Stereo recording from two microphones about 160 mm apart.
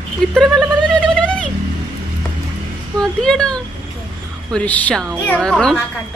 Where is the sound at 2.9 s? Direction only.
5° left (ahead or behind).